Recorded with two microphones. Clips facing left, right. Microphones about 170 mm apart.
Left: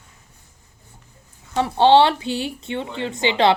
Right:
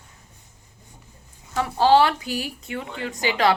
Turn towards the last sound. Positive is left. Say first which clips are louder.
# left 3 dB
turn(degrees=25)  # may be behind; listen again after turning